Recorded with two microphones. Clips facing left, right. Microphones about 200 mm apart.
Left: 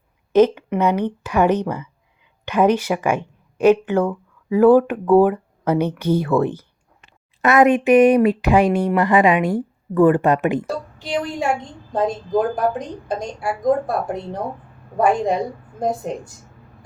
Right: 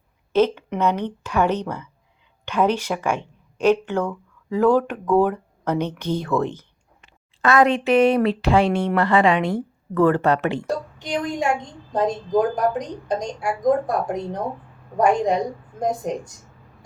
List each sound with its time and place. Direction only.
0.3 s a woman's voice: 10° left (ahead or behind)
10.7 s a sound: 5° left (ahead or behind)
11.9 s a woman's voice: 5° left (ahead or behind)